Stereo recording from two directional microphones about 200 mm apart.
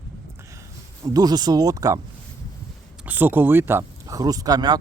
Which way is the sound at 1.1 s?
20° right (ahead or behind).